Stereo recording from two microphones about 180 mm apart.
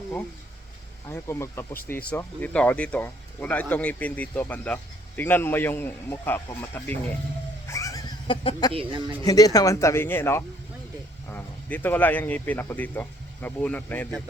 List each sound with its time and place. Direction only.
1.1 s speech: 15° left (ahead or behind)
7.7 s a sound: 20° left (ahead or behind)
8.7 s speech: 30° right (ahead or behind)
9.2 s speech: 20° left (ahead or behind)